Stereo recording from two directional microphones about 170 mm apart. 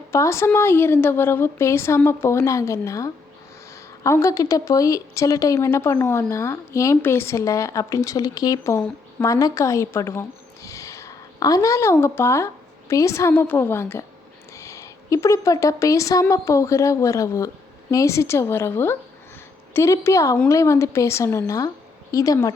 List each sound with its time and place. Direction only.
0.1 s a woman's voice: 15° left (ahead or behind)